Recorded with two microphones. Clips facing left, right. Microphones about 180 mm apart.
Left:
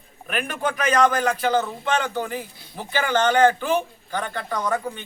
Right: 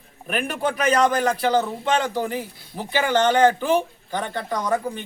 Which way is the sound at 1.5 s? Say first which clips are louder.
Right 2 dB; 30° right (ahead or behind).